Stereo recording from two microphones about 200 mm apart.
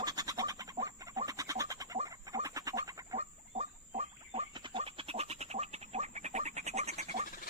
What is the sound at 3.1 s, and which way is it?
Pig, 30° right (ahead or behind).